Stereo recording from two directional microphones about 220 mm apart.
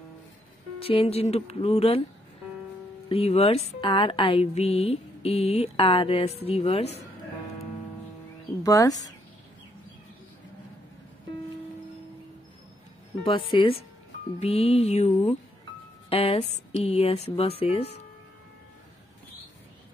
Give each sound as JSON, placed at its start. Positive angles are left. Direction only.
{"t": 0.7, "sound": "speech", "side_deg": 25}
{"t": 3.1, "sound": "speech", "side_deg": 25}
{"t": 8.6, "sound": "speech", "side_deg": 15}
{"t": 13.2, "sound": "speech", "side_deg": 25}